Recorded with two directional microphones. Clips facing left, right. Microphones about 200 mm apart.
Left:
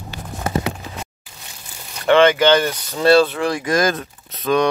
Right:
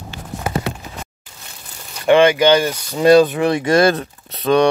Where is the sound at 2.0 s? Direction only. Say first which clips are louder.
Right 1 dB; 15° right (ahead or behind).